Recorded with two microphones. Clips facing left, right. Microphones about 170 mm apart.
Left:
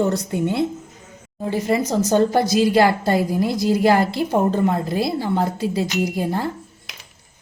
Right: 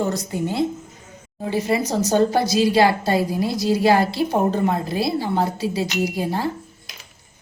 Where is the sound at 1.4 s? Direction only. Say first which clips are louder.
Left 1 dB; 45° left (ahead or behind).